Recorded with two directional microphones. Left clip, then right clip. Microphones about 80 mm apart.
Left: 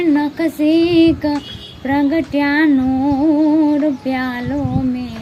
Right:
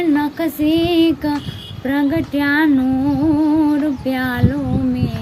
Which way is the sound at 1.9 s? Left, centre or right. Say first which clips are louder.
Left 2 dB; right.